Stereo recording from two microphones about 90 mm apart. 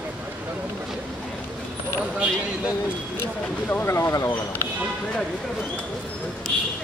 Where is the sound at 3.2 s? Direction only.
25° left (ahead or behind).